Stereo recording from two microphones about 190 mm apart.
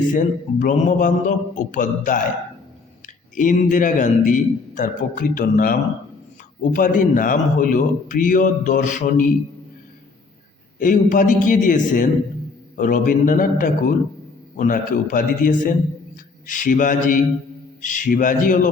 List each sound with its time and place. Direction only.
0.1 s a man's voice: 40° left (ahead or behind)
3.3 s a man's voice: 45° left (ahead or behind)
10.8 s a man's voice: 45° left (ahead or behind)